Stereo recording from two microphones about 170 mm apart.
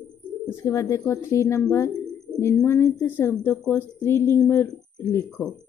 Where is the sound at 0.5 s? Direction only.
15° left (ahead or behind).